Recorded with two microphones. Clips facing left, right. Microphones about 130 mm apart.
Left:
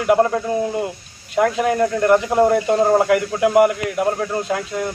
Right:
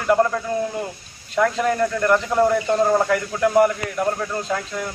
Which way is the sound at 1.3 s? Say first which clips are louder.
Left 2 dB; 15° left (ahead or behind).